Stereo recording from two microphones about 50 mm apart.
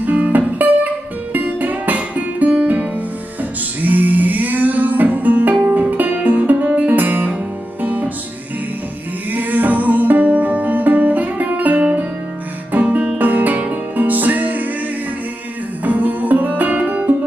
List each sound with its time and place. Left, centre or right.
0.0 s music: right
9.3 s music: right
15.8 s music: right